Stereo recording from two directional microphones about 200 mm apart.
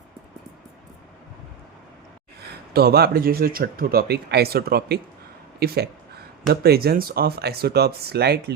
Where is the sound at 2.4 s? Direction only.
50° right (ahead or behind).